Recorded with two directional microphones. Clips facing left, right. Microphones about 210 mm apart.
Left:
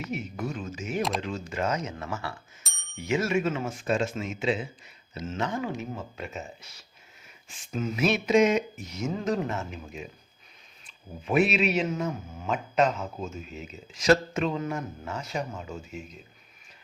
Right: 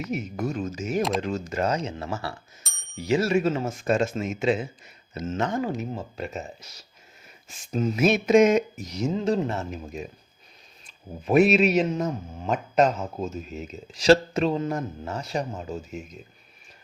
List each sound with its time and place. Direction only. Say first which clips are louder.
0.1 s speech: right 5 dB; 40° right (ahead or behind)
9.0 s speech: right 4 dB; 25° right (ahead or behind)